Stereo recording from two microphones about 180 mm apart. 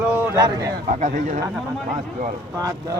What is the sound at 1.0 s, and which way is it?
Speech, 45° right (ahead or behind).